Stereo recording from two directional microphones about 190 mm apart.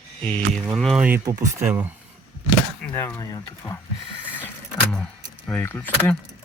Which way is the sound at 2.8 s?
15° left (ahead or behind).